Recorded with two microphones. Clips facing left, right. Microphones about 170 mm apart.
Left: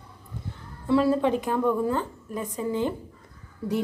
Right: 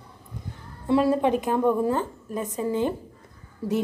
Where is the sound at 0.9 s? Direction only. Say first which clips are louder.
Right 1 dB; 20° right (ahead or behind).